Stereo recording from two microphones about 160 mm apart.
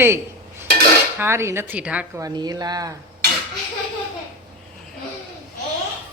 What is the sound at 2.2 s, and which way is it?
Speech, 25° right (ahead or behind).